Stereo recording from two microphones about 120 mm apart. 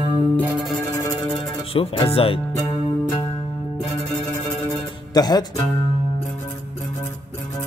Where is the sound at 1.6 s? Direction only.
50° left (ahead or behind).